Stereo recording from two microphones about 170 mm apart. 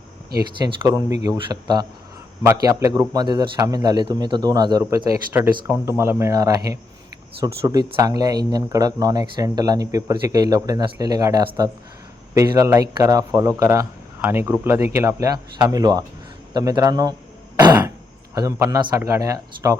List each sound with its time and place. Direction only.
0.6 s a man's voice: 20° right (ahead or behind)
2.4 s a man's voice: 15° right (ahead or behind)
18.3 s a man's voice: 20° right (ahead or behind)